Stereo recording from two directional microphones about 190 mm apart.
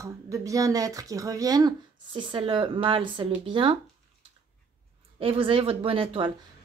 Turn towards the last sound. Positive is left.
turn(degrees=-25)  # may be behind; listen again after turning